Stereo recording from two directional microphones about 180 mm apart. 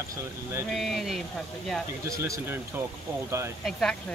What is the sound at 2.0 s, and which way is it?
Speech, 15° right (ahead or behind).